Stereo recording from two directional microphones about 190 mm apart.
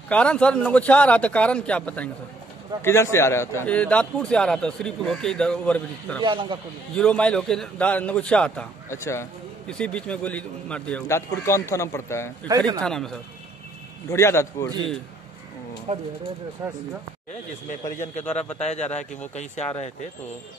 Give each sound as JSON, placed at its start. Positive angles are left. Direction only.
{"t": 0.1, "sound": "a man's voice", "side_deg": 5}
{"t": 6.2, "sound": "a man's voice", "side_deg": -25}
{"t": 7.0, "sound": "a man's voice", "side_deg": 5}
{"t": 12.4, "sound": "a man's voice", "side_deg": -20}
{"t": 12.8, "sound": "a man's voice", "side_deg": 5}
{"t": 14.0, "sound": "a man's voice", "side_deg": 15}
{"t": 15.9, "sound": "speech", "side_deg": -40}
{"t": 16.6, "sound": "a man's voice", "side_deg": -15}
{"t": 17.6, "sound": "a man's voice", "side_deg": 40}